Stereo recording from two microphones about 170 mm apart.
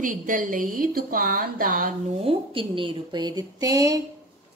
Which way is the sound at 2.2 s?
35° right (ahead or behind).